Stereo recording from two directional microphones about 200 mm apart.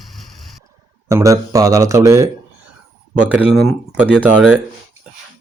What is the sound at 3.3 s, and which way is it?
Speech, 5° right (ahead or behind).